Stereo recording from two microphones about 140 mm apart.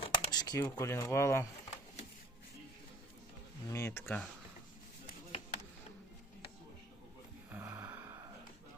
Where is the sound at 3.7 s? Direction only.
20° left (ahead or behind).